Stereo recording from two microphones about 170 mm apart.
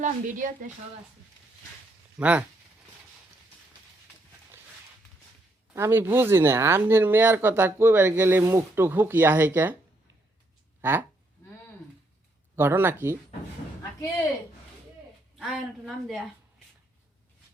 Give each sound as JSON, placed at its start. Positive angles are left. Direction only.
{"t": 0.0, "sound": "a woman's voice", "side_deg": -50}
{"t": 2.1, "sound": "speech", "side_deg": -10}
{"t": 5.7, "sound": "speech", "side_deg": -15}
{"t": 10.8, "sound": "a sound", "side_deg": -10}
{"t": 12.5, "sound": "speech", "side_deg": -10}
{"t": 15.4, "sound": "a woman's voice", "side_deg": 0}